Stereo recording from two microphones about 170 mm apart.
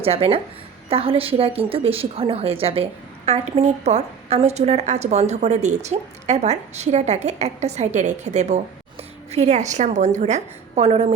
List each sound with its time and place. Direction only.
0.0 s a woman's voice: 35° right (ahead or behind)